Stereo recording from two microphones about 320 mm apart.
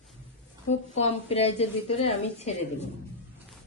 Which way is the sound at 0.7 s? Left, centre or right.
Centre.